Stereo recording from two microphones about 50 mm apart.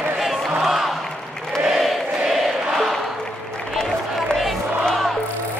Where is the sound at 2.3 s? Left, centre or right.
Centre.